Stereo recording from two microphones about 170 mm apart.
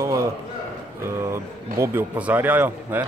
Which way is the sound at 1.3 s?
15° right (ahead or behind).